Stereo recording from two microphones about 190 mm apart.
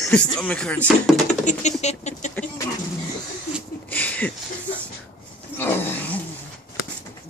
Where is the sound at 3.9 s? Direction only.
5° left (ahead or behind).